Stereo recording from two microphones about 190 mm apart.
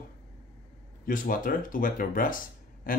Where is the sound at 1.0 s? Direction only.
45° left (ahead or behind).